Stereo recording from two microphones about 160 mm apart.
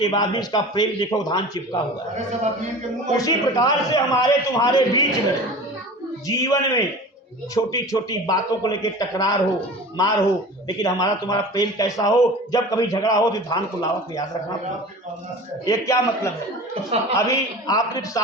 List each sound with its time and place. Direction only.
0.0 s a man's voice: 25° left (ahead or behind)
3.2 s a man's voice: 20° left (ahead or behind)
6.2 s a man's voice: 20° left (ahead or behind)
15.6 s a man's voice: 20° left (ahead or behind)